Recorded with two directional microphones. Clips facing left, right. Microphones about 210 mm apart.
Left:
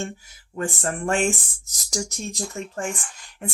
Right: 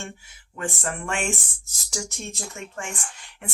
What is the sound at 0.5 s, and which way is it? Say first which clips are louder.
Speech: left 3 dB; 40° left (ahead or behind).